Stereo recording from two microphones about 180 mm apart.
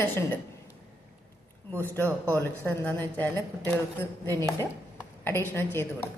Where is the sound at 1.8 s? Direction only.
10° left (ahead or behind).